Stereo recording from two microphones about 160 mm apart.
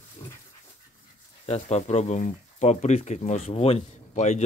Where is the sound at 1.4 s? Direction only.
40° left (ahead or behind).